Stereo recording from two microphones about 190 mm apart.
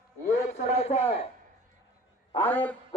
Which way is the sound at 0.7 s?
35° left (ahead or behind).